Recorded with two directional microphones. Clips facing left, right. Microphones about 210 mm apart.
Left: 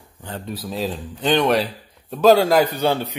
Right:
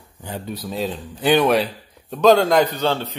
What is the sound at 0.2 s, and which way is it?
Speech, 10° right (ahead or behind).